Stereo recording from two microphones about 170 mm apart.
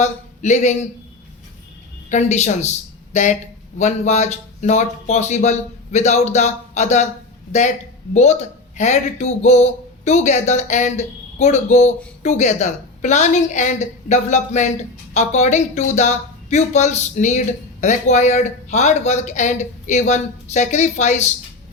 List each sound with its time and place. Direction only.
0.0 s speech: 45° left (ahead or behind)
2.0 s speech: 45° left (ahead or behind)
8.1 s speech: 40° left (ahead or behind)